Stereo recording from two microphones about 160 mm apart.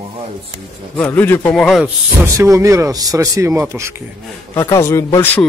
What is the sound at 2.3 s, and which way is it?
Speech, 20° right (ahead or behind).